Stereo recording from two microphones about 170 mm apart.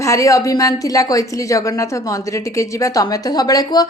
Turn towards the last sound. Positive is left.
turn(degrees=25)  # may be behind; listen again after turning